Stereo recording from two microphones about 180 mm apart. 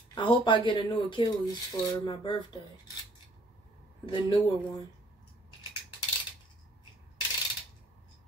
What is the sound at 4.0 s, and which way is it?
Speech, 25° left (ahead or behind).